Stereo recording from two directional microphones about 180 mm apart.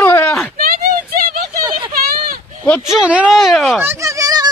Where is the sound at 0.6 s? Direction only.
55° right (ahead or behind).